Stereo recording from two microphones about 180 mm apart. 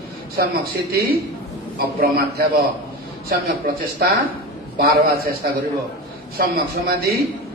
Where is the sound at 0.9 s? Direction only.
55° right (ahead or behind).